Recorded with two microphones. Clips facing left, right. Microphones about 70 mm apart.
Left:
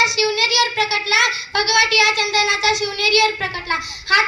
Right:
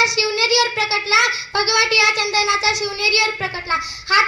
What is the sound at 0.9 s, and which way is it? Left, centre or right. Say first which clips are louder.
A child's voice: right 1 dB; right.